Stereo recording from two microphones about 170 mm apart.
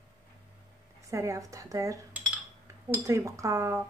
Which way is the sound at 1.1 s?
20° right (ahead or behind).